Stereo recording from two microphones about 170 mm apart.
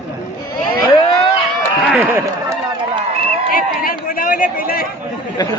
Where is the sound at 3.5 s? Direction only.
55° left (ahead or behind).